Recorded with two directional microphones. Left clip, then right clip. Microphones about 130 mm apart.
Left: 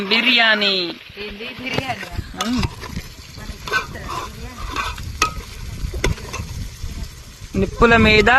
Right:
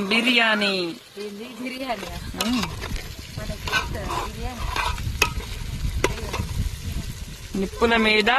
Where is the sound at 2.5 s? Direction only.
Centre (ahead or behind).